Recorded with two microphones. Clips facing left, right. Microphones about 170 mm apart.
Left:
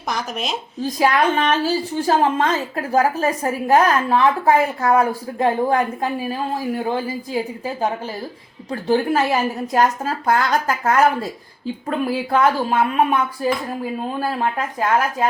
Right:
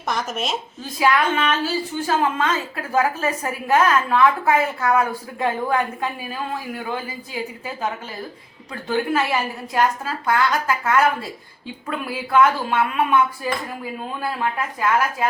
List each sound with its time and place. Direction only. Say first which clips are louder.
0.1 s speech: even; centre (ahead or behind)
0.8 s a woman's voice: left 3 dB; 35° left (ahead or behind)